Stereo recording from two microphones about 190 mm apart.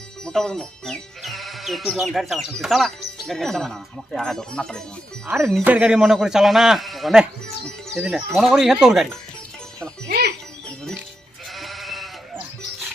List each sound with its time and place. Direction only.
0.3 s speech: 5° left (ahead or behind)
5.3 s speech: 10° right (ahead or behind)
10.1 s music: 55° right (ahead or behind)
11.5 s goat: centre (ahead or behind)